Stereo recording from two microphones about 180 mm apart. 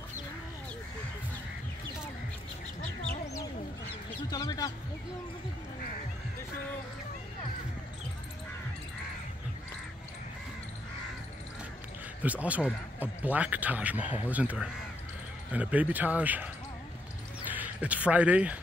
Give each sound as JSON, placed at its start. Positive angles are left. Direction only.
{"t": 4.3, "sound": "a sound", "side_deg": 20}
{"t": 12.2, "sound": "speech", "side_deg": -10}
{"t": 17.5, "sound": "speech", "side_deg": -10}